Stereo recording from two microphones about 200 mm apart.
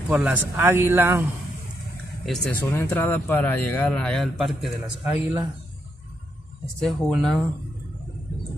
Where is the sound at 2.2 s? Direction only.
Centre (ahead or behind).